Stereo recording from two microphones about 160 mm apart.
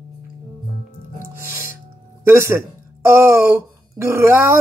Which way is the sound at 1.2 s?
15° right (ahead or behind).